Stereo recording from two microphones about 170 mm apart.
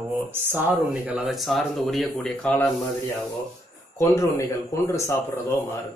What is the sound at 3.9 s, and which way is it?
Speech, 15° left (ahead or behind).